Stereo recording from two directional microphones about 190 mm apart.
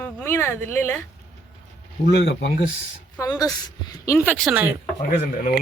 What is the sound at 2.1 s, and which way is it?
Speech, 65° left (ahead or behind).